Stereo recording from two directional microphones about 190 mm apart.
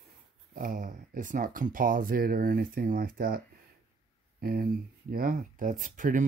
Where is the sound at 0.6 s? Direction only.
45° right (ahead or behind).